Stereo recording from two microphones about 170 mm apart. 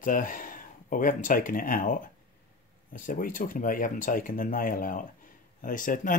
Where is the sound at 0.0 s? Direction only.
55° left (ahead or behind).